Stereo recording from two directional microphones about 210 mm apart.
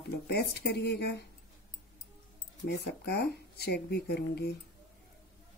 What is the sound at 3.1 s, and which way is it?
Speech, 50° left (ahead or behind).